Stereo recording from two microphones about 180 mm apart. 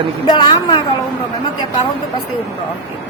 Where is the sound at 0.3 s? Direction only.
25° left (ahead or behind).